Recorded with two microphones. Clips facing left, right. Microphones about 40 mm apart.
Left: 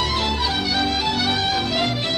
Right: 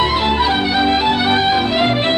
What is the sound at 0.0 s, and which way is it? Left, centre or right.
Music, right.